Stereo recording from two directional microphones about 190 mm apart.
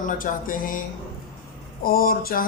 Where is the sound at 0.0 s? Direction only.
45° left (ahead or behind).